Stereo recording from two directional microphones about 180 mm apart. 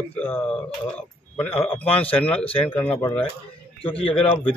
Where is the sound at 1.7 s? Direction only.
10° left (ahead or behind).